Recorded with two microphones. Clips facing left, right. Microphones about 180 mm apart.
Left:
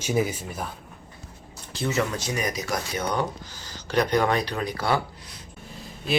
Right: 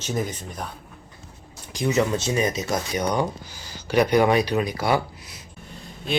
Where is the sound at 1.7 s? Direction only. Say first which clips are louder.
Right 4 dB; 15° right (ahead or behind).